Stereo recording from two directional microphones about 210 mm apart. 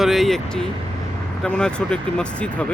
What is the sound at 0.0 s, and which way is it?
Speech, centre (ahead or behind).